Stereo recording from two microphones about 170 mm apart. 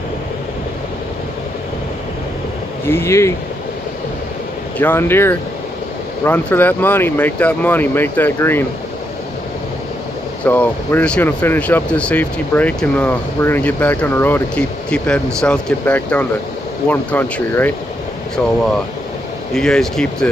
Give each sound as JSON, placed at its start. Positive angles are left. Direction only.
{"t": 2.9, "sound": "speech", "side_deg": 15}
{"t": 4.7, "sound": "speech", "side_deg": 10}
{"t": 10.4, "sound": "speech", "side_deg": 10}
{"t": 19.5, "sound": "speech", "side_deg": 5}